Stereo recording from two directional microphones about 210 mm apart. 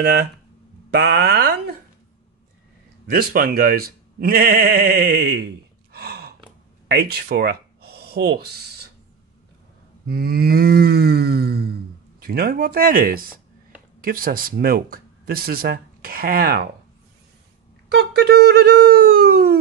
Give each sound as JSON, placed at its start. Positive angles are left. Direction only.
{"t": 0.0, "sound": "speech", "side_deg": -50}
{"t": 3.1, "sound": "speech", "side_deg": -45}
{"t": 5.9, "sound": "a sound", "side_deg": -50}
{"t": 6.9, "sound": "speech", "side_deg": -50}
{"t": 10.0, "sound": "speech", "side_deg": -45}
{"t": 17.9, "sound": "speech", "side_deg": -50}